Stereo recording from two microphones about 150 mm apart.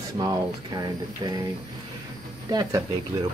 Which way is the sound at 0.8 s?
25° right (ahead or behind).